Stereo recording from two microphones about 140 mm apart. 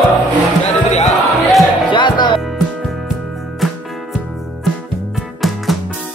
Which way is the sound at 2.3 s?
Centre (ahead or behind).